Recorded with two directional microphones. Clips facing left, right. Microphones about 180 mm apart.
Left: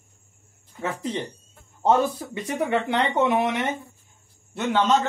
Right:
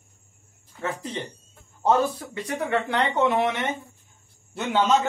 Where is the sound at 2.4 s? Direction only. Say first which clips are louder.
Left 2 dB; 20° left (ahead or behind).